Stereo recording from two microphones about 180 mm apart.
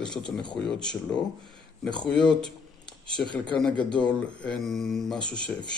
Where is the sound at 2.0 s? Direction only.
5° left (ahead or behind).